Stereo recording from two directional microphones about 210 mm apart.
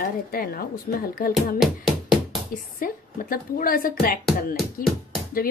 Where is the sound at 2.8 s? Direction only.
40° left (ahead or behind).